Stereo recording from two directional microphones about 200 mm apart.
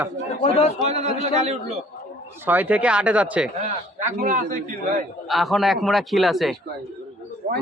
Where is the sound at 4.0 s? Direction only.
40° right (ahead or behind).